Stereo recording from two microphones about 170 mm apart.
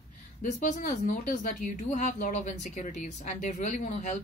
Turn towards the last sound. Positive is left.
turn(degrees=45)  # may be behind; listen again after turning